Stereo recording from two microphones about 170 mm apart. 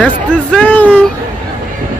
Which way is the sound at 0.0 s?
5° left (ahead or behind).